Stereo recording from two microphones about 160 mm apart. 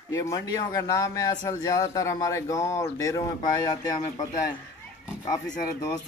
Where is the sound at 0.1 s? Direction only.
20° left (ahead or behind).